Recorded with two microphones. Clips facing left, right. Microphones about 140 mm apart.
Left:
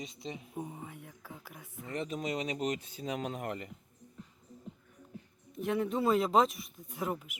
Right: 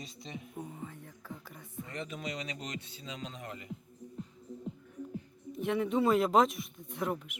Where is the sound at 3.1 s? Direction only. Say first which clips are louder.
Left 7 dB; 55° left (ahead or behind).